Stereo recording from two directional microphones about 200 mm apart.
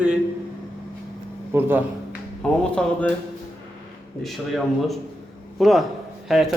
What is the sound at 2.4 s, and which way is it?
Speech, 5° left (ahead or behind).